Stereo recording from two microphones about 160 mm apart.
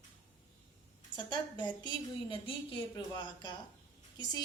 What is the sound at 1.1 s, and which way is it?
Speech, 30° left (ahead or behind).